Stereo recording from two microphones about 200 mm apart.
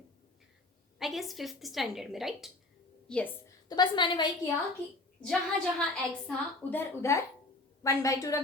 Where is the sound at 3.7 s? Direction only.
20° left (ahead or behind).